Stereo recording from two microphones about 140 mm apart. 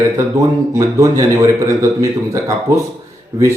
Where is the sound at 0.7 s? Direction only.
25° right (ahead or behind).